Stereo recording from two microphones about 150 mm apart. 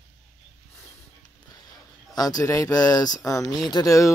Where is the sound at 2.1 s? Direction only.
25° left (ahead or behind).